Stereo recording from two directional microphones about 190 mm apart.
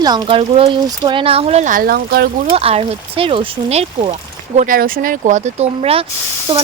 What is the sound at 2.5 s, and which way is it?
Speech, 30° right (ahead or behind).